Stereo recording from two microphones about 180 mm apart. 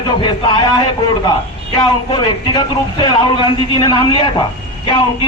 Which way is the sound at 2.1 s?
25° left (ahead or behind).